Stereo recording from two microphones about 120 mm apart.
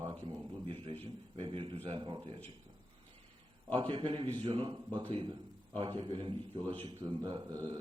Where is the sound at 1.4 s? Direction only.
45° right (ahead or behind).